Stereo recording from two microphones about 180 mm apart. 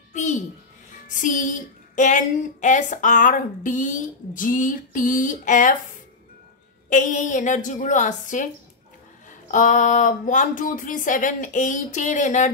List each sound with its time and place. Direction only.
0.1 s a sound: 40° left (ahead or behind)
1.0 s speech: 45° left (ahead or behind)
6.9 s speech: 45° left (ahead or behind)